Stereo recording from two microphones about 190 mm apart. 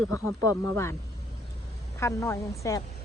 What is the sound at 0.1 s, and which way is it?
Speech, 15° left (ahead or behind).